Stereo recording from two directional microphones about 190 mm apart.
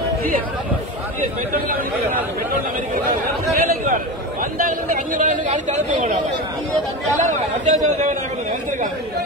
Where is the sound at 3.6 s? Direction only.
45° right (ahead or behind).